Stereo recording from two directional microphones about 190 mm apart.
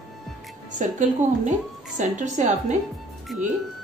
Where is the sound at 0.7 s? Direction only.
40° right (ahead or behind).